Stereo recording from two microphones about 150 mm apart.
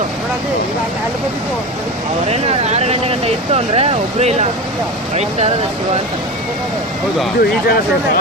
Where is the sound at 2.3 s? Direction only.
45° right (ahead or behind).